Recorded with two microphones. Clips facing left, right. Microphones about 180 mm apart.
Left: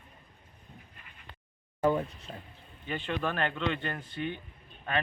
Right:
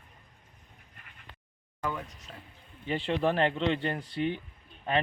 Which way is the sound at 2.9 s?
30° right (ahead or behind).